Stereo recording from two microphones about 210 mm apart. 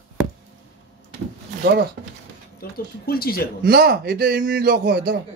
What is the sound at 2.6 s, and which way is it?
Speech, 45° left (ahead or behind).